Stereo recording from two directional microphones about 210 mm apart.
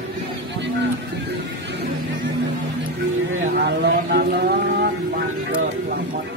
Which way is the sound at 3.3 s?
55° right (ahead or behind).